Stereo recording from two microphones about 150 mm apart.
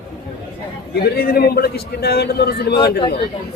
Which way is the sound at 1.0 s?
90° left.